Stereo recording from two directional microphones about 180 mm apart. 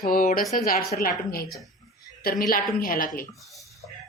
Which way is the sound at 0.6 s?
50° left (ahead or behind).